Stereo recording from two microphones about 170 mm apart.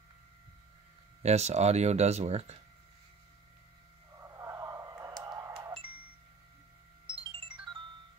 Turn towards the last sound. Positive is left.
turn(degrees=-30)  # may be behind; listen again after turning